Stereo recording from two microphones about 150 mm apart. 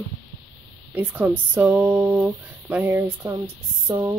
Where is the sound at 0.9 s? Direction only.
10° right (ahead or behind).